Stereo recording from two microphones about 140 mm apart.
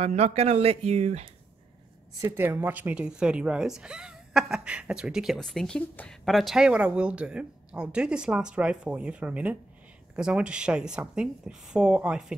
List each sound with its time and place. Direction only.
0.0 s speech: 50° right (ahead or behind)
2.2 s speech: 15° right (ahead or behind)